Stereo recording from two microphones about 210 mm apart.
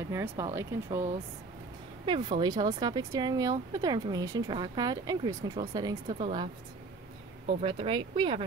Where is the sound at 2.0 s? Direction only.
20° right (ahead or behind).